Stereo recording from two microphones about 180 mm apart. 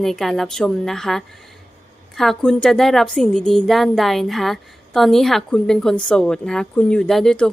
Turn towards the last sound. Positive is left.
turn(degrees=5)  # may be behind; listen again after turning